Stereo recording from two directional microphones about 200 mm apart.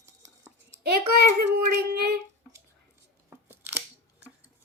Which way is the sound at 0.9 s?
50° right (ahead or behind).